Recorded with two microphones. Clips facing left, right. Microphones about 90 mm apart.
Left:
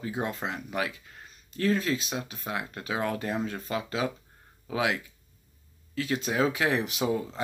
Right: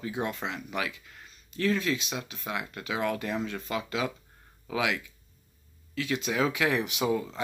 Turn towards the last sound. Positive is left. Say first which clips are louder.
# even
turn(degrees=30)  # may be behind; listen again after turning